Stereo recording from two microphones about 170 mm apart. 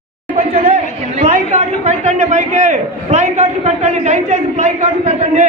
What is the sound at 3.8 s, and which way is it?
A man's voice, 40° right (ahead or behind).